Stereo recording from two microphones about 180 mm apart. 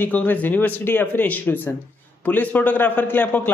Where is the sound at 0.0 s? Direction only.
10° left (ahead or behind).